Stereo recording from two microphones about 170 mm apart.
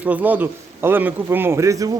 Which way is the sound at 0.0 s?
10° right (ahead or behind).